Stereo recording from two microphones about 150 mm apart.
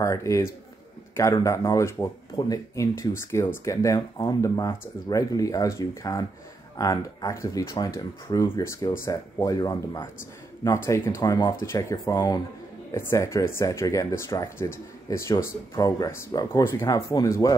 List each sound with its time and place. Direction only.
0.0 s a man's voice: 20° left (ahead or behind)